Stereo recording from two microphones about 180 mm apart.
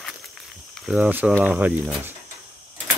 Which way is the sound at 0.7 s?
5° right (ahead or behind).